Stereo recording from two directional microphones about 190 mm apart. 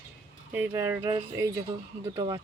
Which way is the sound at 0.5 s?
10° right (ahead or behind).